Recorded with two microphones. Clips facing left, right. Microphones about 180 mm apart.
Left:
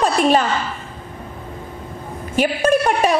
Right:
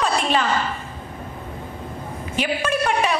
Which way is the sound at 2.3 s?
45° left (ahead or behind).